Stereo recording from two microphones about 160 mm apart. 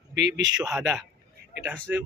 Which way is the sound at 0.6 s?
5° right (ahead or behind).